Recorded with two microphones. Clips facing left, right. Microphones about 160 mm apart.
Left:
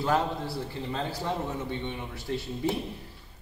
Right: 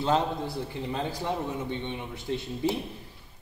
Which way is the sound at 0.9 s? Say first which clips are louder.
Right 1 dB; 15° right (ahead or behind).